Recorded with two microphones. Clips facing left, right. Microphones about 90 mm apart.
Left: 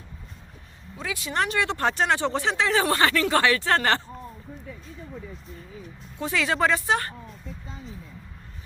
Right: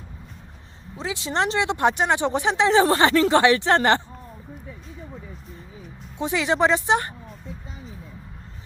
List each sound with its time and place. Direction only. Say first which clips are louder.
0.9 s speech: right 3 dB; 25° right (ahead or behind)
6.1 s speech: right 3 dB; 20° right (ahead or behind)